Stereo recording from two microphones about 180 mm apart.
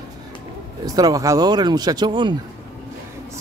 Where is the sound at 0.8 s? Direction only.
20° right (ahead or behind).